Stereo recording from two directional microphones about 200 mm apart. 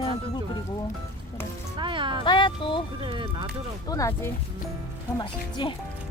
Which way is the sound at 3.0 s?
25° right (ahead or behind).